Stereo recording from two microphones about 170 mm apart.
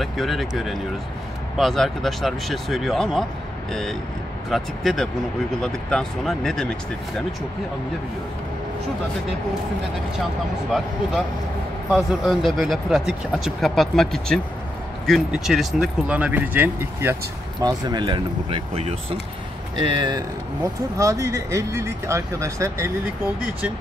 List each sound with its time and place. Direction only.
0.0 s speech: centre (ahead or behind)
4.5 s speech: centre (ahead or behind)
11.9 s speech: centre (ahead or behind); by 18.6 s 30° right (ahead or behind)
18.8 s speech: 40° right (ahead or behind)
19.8 s speech: 25° right (ahead or behind)